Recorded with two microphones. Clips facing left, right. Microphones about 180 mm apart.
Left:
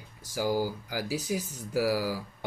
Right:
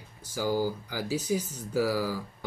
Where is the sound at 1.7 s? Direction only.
10° left (ahead or behind).